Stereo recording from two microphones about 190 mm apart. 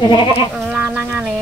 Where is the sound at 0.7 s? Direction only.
5° right (ahead or behind).